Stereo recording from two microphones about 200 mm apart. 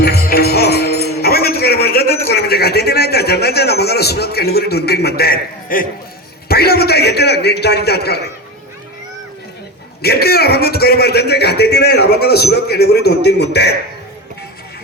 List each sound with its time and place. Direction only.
0.0 s music: 50° left (ahead or behind)
6.5 s a man's voice: 50° left (ahead or behind)
10.0 s a man's voice: 50° left (ahead or behind)